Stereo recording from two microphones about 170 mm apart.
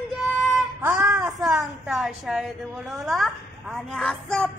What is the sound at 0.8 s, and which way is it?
Music, 15° right (ahead or behind).